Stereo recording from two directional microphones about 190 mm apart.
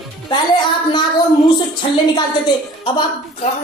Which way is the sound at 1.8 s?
25° left (ahead or behind).